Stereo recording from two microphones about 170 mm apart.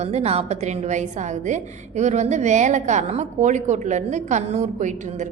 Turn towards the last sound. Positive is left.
turn(degrees=-45)  # may be behind; listen again after turning